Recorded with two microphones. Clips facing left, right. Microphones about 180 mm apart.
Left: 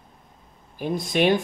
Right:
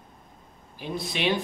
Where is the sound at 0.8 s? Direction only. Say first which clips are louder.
Left 7 dB; 45° left (ahead or behind).